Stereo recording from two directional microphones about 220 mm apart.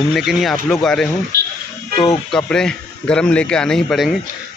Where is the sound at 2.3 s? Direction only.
5° left (ahead or behind).